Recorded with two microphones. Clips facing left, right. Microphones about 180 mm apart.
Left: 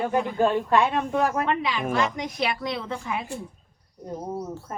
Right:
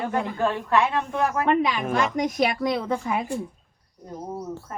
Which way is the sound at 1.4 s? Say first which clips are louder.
Right 4 dB; 50° right (ahead or behind).